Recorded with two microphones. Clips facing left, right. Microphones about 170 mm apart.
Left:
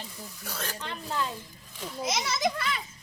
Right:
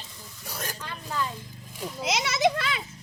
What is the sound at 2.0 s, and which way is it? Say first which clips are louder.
Speech: right 4 dB; 80° right.